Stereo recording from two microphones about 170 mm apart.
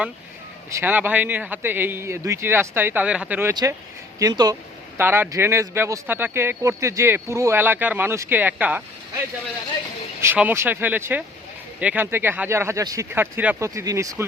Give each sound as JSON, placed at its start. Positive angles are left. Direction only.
{"t": 0.7, "sound": "speech", "side_deg": -15}
{"t": 3.5, "sound": "speech", "side_deg": -25}
{"t": 10.2, "sound": "speech", "side_deg": -10}